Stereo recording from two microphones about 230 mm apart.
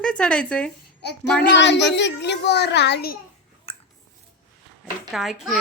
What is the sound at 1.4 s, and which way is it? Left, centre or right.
A child's voice, left.